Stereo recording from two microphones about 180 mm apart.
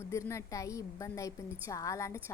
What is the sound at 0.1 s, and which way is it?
A woman's voice, 15° left (ahead or behind).